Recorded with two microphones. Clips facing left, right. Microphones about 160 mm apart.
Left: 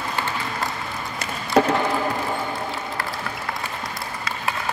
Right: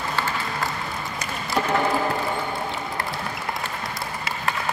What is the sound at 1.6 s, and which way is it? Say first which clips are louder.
Music: left 7 dB; 90° left.